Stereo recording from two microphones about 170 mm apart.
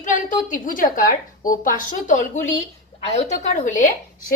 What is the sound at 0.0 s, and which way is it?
A woman's voice, 50° left (ahead or behind).